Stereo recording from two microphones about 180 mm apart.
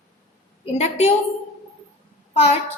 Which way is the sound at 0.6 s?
35° left (ahead or behind).